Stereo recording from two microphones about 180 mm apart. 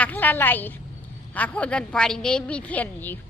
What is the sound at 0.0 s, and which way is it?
A woman's voice, 10° left (ahead or behind).